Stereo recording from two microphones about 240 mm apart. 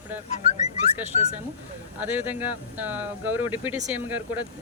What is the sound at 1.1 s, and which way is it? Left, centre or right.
Speech, left.